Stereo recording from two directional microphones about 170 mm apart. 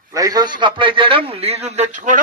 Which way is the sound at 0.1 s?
20° right (ahead or behind).